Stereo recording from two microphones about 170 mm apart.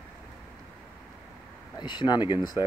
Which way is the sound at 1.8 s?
25° left (ahead or behind).